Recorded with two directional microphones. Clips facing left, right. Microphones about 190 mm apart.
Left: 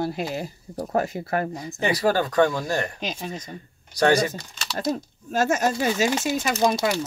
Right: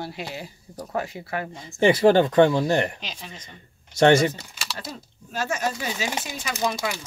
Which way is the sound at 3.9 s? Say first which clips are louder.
Right 3 dB; 25° right (ahead or behind).